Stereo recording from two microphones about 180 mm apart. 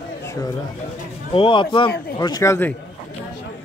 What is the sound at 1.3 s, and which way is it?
Speech, 30° left (ahead or behind).